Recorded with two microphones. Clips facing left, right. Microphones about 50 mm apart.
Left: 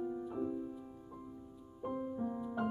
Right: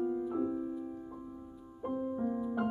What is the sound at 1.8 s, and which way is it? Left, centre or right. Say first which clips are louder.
Music: right 4 dB; centre.